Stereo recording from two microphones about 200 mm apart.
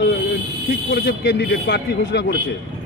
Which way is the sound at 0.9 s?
55° left (ahead or behind).